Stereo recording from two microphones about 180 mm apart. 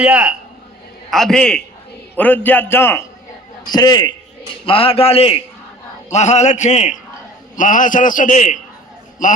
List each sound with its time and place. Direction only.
0.0 s a man's voice: 10° right (ahead or behind); by 8.5 s 45° left (ahead or behind)